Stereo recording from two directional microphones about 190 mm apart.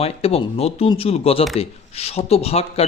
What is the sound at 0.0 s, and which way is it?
Speech, 30° left (ahead or behind).